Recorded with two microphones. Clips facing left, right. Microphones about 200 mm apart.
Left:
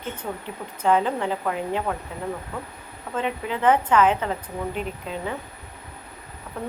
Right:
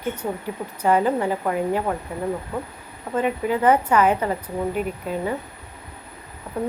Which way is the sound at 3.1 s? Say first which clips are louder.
Right 5 dB; 25° right (ahead or behind).